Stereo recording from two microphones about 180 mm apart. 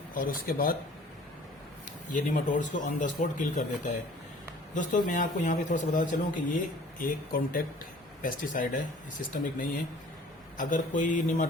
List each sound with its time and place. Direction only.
0.1 s a man's voice: 50° left (ahead or behind)
2.3 s a man's voice: 45° left (ahead or behind)